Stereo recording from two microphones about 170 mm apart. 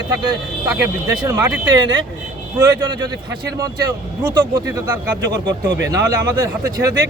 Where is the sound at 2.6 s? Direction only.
20° right (ahead or behind).